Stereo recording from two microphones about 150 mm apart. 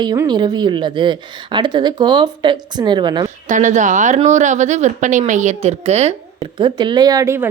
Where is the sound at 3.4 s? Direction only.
55° right (ahead or behind).